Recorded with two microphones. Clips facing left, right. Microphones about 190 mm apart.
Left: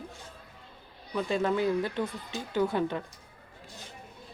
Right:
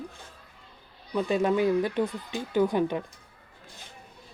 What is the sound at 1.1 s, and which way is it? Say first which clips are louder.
Speech: right 3 dB; 20° right (ahead or behind).